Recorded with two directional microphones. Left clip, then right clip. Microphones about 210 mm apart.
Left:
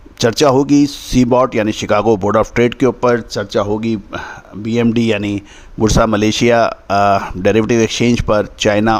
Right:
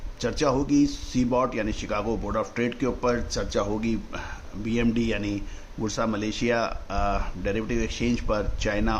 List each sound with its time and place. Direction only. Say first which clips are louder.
0.2 s speech: left 13 dB; 55° left (ahead or behind)